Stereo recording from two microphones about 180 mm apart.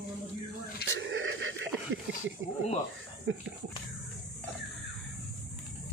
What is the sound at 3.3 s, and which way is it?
Speech, 90° right.